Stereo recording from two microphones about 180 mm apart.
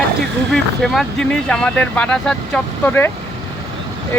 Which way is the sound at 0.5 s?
Centre (ahead or behind).